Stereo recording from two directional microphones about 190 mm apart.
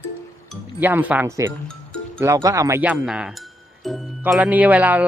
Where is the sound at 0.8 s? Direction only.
10° right (ahead or behind).